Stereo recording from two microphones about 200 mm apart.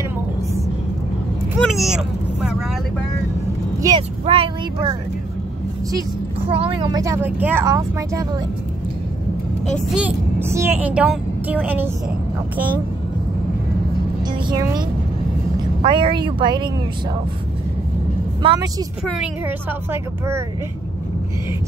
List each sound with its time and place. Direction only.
1.6 s speech: centre (ahead or behind)
4.3 s speech: 25° right (ahead or behind)
6.5 s speech: 25° right (ahead or behind)
9.9 s speech: 10° right (ahead or behind)
14.4 s speech: 20° right (ahead or behind)
18.4 s speech: 20° right (ahead or behind)